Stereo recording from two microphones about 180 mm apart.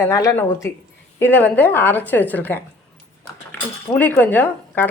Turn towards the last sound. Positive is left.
turn(degrees=10)  # may be behind; listen again after turning